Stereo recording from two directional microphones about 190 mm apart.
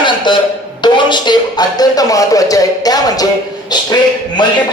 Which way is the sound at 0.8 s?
25° left (ahead or behind).